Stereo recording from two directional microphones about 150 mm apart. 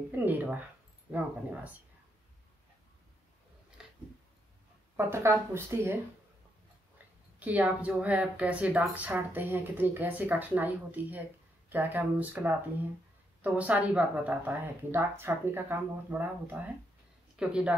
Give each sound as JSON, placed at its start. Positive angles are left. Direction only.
{"t": 0.1, "sound": "a woman's voice", "side_deg": -10}
{"t": 3.8, "sound": "a sound", "side_deg": -5}
{"t": 4.9, "sound": "a woman's voice", "side_deg": -15}
{"t": 7.3, "sound": "a woman's voice", "side_deg": -10}